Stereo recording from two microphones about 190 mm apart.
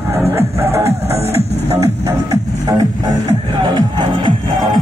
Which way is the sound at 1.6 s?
15° right (ahead or behind).